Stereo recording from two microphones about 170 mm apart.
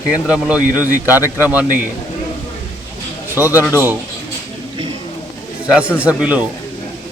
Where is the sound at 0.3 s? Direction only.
10° right (ahead or behind).